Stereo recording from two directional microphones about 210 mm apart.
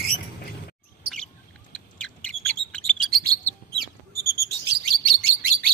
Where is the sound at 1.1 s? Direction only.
5° left (ahead or behind).